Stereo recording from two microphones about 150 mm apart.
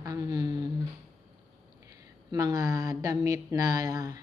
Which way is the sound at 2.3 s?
25° right (ahead or behind).